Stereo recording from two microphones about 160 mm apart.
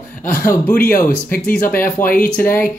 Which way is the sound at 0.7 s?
65° left (ahead or behind).